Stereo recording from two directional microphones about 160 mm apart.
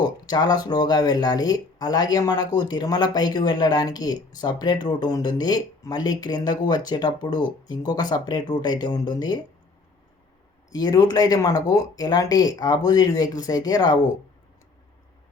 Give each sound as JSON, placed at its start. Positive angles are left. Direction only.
{"t": 0.0, "sound": "speech", "side_deg": 25}
{"t": 10.8, "sound": "speech", "side_deg": 25}